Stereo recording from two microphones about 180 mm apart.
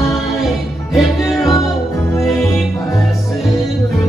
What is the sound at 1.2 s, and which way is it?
Music, centre (ahead or behind).